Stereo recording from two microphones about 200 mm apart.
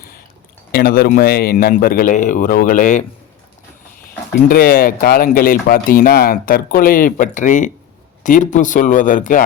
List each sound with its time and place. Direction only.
0.7 s speech: 50° left (ahead or behind)
4.4 s speech: 45° left (ahead or behind)